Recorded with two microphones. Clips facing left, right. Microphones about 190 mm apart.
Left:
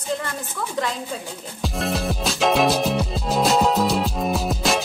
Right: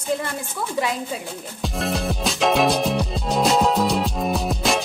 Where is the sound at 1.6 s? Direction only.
Centre (ahead or behind).